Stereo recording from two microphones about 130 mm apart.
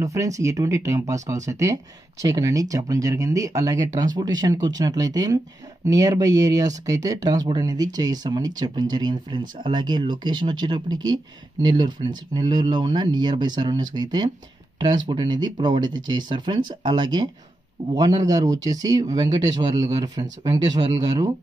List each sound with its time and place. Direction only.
0.0 s speech: 25° right (ahead or behind)